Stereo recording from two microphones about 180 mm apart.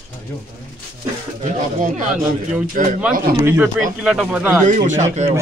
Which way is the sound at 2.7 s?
45° right (ahead or behind).